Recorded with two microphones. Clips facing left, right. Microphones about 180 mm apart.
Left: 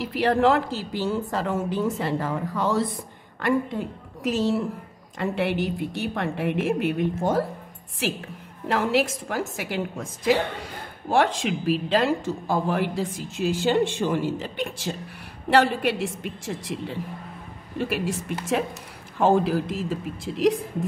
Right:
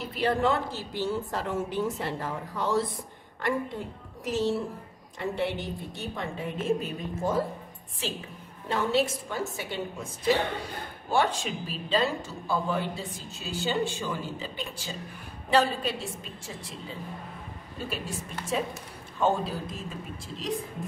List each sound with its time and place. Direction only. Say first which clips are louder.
0.0 s a woman's voice: left 6 dB; 85° left
19.1 s a woman's voice: left 7 dB; 90° left